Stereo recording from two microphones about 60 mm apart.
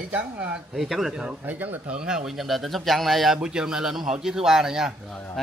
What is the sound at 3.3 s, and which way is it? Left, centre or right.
Speech, centre.